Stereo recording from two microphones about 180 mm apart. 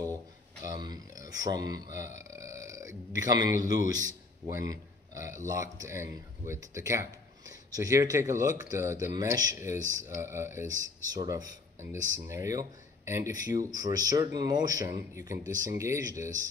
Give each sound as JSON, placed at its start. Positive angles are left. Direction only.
{"t": 0.7, "sound": "a man's voice", "side_deg": -20}